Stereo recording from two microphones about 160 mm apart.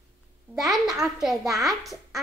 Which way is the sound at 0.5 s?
Centre (ahead or behind).